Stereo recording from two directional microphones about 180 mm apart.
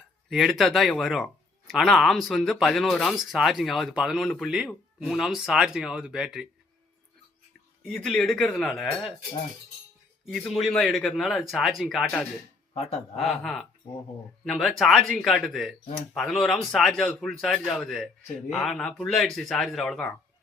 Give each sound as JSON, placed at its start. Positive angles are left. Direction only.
{"t": 0.3, "sound": "speech", "side_deg": 0}
{"t": 7.8, "sound": "speech", "side_deg": 5}
{"t": 10.2, "sound": "speech", "side_deg": 0}
{"t": 12.7, "sound": "speech", "side_deg": 35}
{"t": 13.1, "sound": "speech", "side_deg": 0}